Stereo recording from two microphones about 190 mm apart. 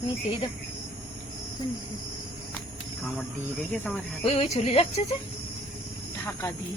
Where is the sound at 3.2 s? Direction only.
5° left (ahead or behind).